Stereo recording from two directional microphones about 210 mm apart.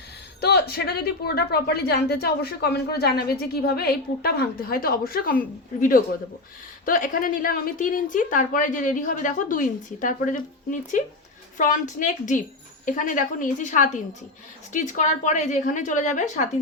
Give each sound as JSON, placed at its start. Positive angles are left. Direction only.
{"t": 0.4, "sound": "a woman's voice", "side_deg": 50}
{"t": 6.8, "sound": "a woman's voice", "side_deg": 40}